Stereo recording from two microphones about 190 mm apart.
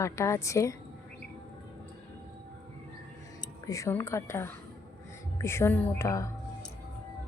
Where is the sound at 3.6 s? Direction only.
15° left (ahead or behind).